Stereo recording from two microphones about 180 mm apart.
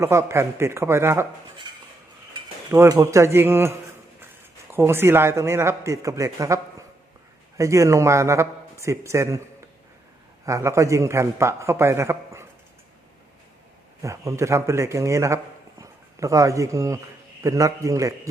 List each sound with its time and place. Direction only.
0.0 s a man's voice: 15° right (ahead or behind)
1.7 s cutlery: 25° right (ahead or behind)
2.7 s a man's voice: 15° right (ahead or behind)
14.0 s a man's voice: 15° right (ahead or behind)